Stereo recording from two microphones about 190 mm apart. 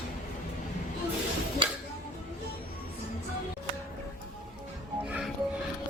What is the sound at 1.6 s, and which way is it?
Music, 25° right (ahead or behind).